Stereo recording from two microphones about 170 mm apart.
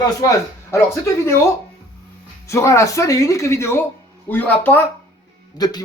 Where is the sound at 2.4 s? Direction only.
15° left (ahead or behind).